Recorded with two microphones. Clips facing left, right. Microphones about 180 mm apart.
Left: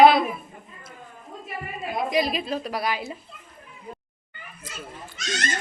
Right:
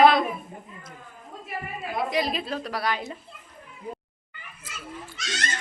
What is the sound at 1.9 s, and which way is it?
A woman's voice, 15° left (ahead or behind).